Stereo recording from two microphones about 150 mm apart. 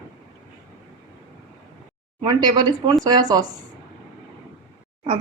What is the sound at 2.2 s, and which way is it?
Speech, 30° right (ahead or behind).